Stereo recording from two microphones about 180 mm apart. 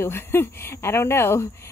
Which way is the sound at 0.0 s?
15° left (ahead or behind).